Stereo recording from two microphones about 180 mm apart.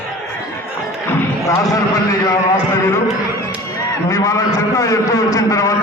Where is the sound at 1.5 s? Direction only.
20° left (ahead or behind).